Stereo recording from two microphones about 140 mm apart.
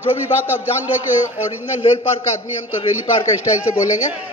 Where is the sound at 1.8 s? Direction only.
45° left (ahead or behind).